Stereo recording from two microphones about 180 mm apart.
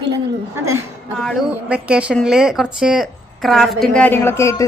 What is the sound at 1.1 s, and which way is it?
A woman's voice, centre (ahead or behind).